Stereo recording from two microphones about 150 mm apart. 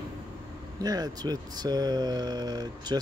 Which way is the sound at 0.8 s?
25° right (ahead or behind).